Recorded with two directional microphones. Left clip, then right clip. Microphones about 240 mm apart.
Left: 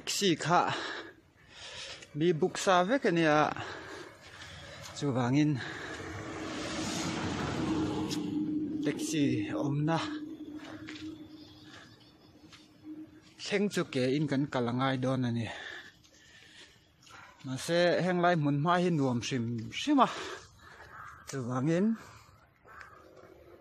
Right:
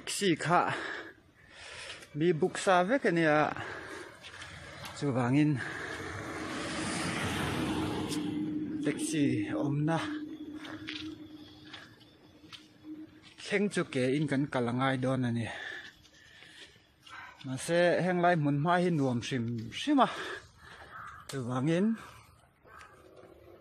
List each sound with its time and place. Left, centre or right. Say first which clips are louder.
0.0 s a man's voice: left 1 dB; centre
4.9 s vehicle: even; centre
7.7 s a sound: left 1 dB; right
8.8 s a man's voice: right 1 dB; centre
10.9 s a sound: right 7 dB; centre
13.4 s a man's voice: even; centre
17.5 s a man's voice: even; centre
21.4 s a man's voice: even; centre